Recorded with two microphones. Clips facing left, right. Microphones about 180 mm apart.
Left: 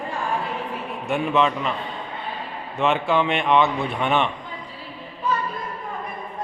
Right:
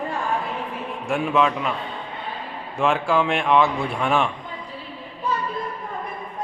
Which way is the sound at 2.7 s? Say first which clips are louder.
Even; centre (ahead or behind).